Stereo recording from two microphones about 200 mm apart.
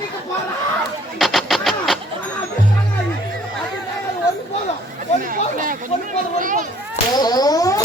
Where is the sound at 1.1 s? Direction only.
Centre (ahead or behind).